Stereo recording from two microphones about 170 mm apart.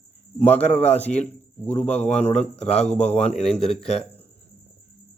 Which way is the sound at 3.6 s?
5° left (ahead or behind).